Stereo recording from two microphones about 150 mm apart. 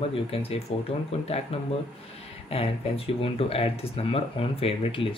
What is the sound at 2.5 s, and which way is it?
Speech, 45° left (ahead or behind).